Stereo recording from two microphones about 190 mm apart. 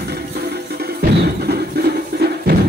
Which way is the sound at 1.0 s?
55° right (ahead or behind).